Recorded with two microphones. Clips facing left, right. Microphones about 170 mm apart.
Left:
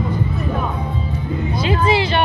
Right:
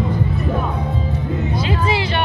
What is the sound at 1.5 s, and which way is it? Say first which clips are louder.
Music: left 5 dB; 20° left (ahead or behind).